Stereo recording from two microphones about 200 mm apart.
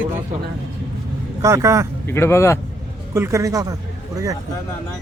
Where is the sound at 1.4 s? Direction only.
15° right (ahead or behind).